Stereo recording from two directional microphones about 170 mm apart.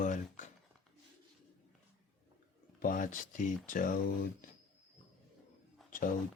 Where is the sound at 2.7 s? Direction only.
55° left (ahead or behind).